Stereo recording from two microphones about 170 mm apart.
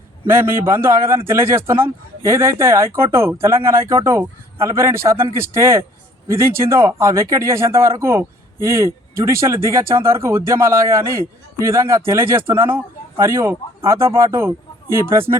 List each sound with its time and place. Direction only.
0.3 s speech: 15° right (ahead or behind)